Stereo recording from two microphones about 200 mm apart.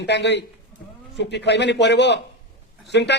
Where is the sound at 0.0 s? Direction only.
60° left (ahead or behind).